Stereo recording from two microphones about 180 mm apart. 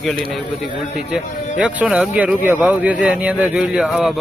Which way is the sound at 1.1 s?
5° right (ahead or behind).